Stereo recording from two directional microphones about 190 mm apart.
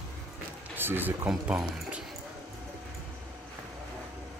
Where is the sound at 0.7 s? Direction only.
10° right (ahead or behind).